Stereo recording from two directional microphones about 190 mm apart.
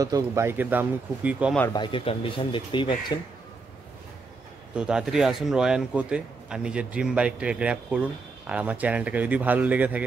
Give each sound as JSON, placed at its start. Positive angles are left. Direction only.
{"t": 0.0, "sound": "speech", "side_deg": -15}
{"t": 1.7, "sound": "speech", "side_deg": 25}
{"t": 4.7, "sound": "a man's voice", "side_deg": -5}